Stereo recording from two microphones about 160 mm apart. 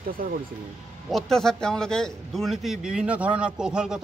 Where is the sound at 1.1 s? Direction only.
5° left (ahead or behind).